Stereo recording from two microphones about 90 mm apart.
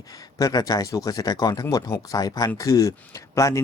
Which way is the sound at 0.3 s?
40° left (ahead or behind).